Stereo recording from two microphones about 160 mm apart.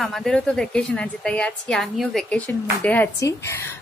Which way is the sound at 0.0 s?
Centre (ahead or behind).